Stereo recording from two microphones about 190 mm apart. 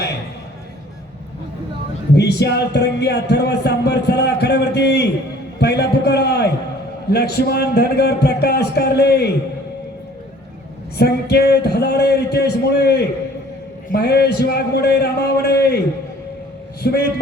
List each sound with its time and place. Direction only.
2.1 s speech: 60° left (ahead or behind)
10.9 s speech: 55° left (ahead or behind)
16.8 s speech: 55° left (ahead or behind)